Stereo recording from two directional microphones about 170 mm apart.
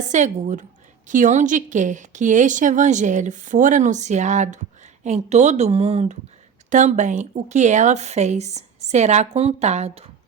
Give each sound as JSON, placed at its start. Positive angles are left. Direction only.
{"t": 0.0, "sound": "a woman's voice", "side_deg": -45}